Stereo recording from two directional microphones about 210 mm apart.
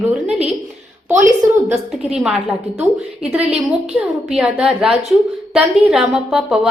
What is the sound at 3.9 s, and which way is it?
A woman's voice, 5° right (ahead or behind).